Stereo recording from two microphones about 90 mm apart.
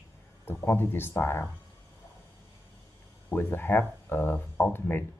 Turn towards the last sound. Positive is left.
turn(degrees=25)  # may be behind; listen again after turning